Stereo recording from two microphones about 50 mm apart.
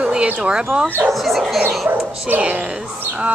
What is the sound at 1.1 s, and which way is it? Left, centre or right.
Speech, centre.